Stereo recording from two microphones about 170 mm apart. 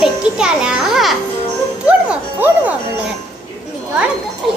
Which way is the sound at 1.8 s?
10° right (ahead or behind).